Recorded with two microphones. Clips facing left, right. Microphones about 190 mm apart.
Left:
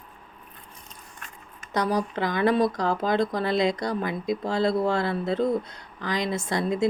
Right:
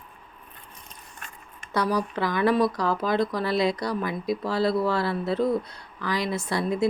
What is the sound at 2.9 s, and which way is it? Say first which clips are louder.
Speech: even; 25° left (ahead or behind).